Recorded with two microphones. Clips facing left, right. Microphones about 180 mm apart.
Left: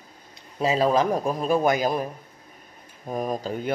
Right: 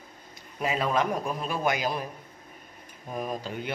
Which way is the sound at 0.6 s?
30° left (ahead or behind).